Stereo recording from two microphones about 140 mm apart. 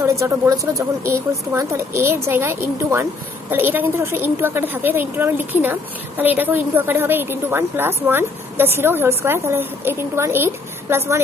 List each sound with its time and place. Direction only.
0.0 s speech: 20° right (ahead or behind)